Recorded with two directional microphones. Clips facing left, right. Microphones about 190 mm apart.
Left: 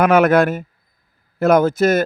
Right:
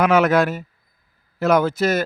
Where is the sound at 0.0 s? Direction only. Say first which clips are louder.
Left 3 dB; 55° left (ahead or behind).